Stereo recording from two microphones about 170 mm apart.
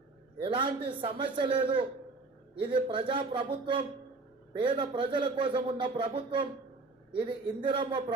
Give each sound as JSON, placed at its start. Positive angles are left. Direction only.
{"t": 0.4, "sound": "a man's voice", "side_deg": -30}